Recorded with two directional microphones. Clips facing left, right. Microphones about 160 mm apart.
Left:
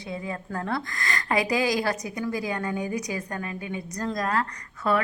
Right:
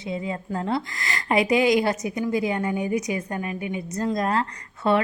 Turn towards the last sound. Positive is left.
turn(degrees=-25)  # may be behind; listen again after turning